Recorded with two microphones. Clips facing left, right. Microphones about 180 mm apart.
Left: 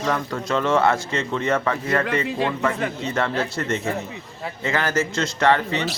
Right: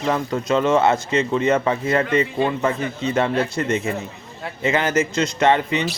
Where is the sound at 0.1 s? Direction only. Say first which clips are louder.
Right 5 dB; 20° right (ahead or behind).